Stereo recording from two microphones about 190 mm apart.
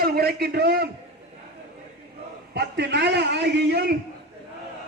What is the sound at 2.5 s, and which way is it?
A man's voice, 60° right (ahead or behind).